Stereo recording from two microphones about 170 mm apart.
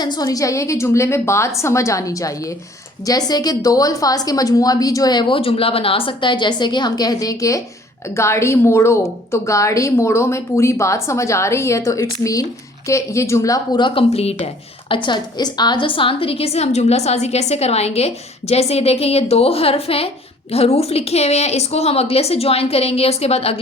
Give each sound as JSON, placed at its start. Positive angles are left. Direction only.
{"t": 0.0, "sound": "a woman's voice", "side_deg": 25}